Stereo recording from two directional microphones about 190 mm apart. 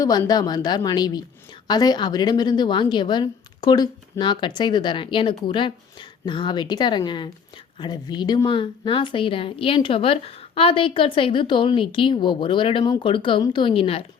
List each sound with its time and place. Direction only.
0.0 s a woman's voice: 20° left (ahead or behind)